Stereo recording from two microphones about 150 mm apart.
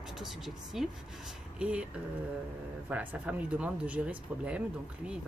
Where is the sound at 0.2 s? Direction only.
Centre (ahead or behind).